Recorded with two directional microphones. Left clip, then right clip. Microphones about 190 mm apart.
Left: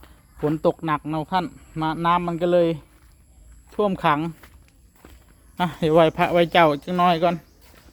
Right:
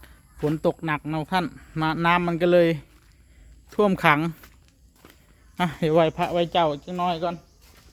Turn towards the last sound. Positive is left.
turn(degrees=25)  # may be behind; listen again after turning